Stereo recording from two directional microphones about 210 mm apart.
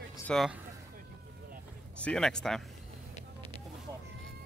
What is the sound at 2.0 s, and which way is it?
Speech, 5° left (ahead or behind).